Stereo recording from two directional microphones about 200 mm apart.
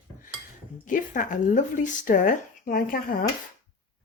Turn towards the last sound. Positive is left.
turn(degrees=45)  # may be behind; listen again after turning